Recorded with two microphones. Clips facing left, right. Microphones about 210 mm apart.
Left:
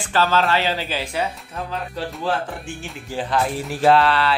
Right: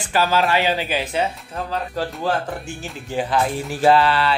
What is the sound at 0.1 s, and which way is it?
Speech, 10° right (ahead or behind).